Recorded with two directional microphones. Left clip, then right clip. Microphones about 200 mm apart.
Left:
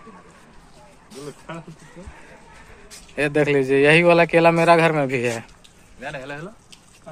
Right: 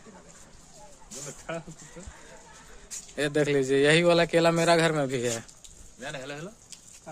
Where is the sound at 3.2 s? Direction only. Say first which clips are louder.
Left 6 dB; centre (ahead or behind).